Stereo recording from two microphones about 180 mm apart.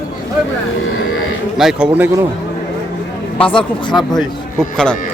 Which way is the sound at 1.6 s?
5° right (ahead or behind).